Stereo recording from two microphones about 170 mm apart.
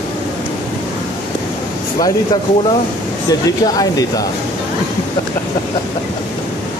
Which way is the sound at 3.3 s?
20° left (ahead or behind).